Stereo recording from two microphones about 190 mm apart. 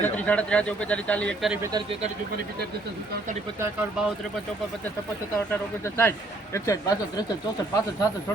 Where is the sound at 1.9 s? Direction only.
35° right (ahead or behind).